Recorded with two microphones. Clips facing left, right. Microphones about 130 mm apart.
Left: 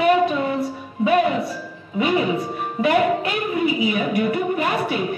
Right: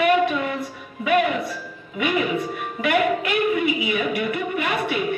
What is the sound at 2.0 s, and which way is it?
A woman's voice, 35° left (ahead or behind).